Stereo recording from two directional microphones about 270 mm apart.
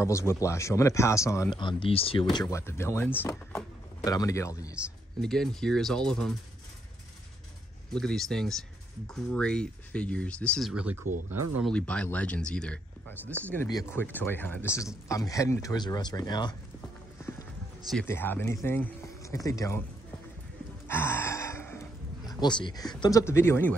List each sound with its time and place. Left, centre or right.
0.0 s speech: centre
2.3 s speech: centre
7.9 s speech: centre
20.8 s gasp: centre
22.2 s speech: centre